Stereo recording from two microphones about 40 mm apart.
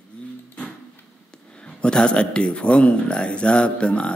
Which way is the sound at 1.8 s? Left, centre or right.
Left.